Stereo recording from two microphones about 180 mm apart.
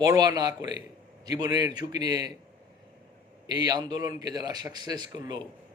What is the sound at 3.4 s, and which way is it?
A man's voice, 20° right (ahead or behind).